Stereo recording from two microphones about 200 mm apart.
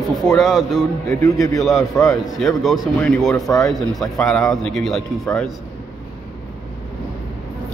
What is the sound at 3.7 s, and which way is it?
Speech, centre (ahead or behind).